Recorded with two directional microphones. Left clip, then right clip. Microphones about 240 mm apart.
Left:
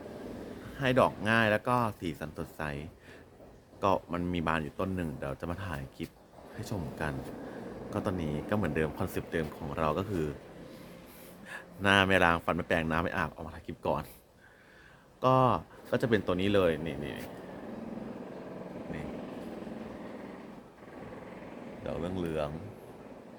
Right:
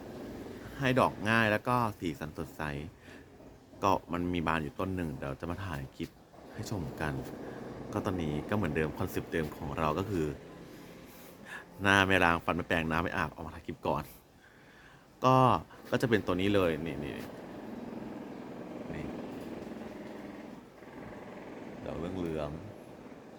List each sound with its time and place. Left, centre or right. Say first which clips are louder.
0.8 s speech: left 2 dB; centre
11.4 s speech: left 1 dB; centre
15.2 s speech: right 1 dB; centre
21.8 s speech: left 2 dB; left